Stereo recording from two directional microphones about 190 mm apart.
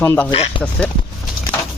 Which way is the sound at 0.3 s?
30° left (ahead or behind).